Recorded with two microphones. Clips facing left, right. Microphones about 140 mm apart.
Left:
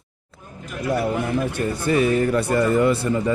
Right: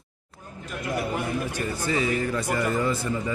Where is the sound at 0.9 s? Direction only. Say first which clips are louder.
Left 6 dB; 60° left (ahead or behind).